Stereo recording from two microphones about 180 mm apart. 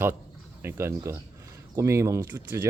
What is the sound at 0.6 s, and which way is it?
A man's voice, 15° right (ahead or behind).